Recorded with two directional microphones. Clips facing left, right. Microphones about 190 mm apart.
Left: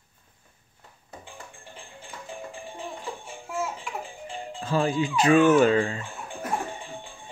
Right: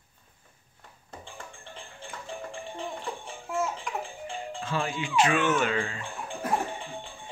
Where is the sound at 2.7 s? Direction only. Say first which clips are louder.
Right 1 dB; 5° left (ahead or behind).